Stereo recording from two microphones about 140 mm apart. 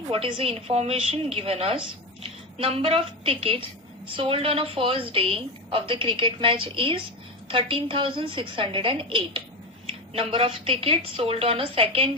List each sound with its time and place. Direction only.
0.1 s a woman's voice: 40° right (ahead or behind)